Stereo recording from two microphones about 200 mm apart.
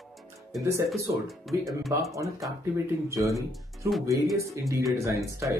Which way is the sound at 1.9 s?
15° right (ahead or behind).